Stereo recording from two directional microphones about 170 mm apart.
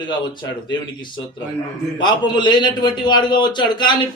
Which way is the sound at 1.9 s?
25° left (ahead or behind).